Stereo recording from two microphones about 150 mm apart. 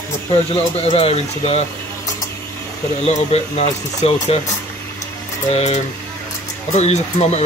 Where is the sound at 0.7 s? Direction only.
40° left (ahead or behind).